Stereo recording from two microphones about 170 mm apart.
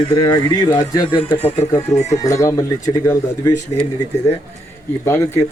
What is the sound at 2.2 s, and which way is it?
Speech, 20° left (ahead or behind).